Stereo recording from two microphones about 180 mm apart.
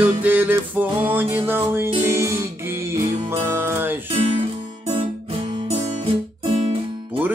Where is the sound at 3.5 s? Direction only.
15° right (ahead or behind).